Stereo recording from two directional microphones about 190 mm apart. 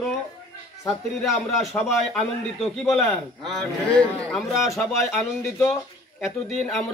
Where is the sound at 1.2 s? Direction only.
Centre (ahead or behind).